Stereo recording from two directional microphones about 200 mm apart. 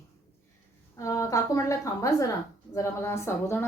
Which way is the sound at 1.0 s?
15° left (ahead or behind).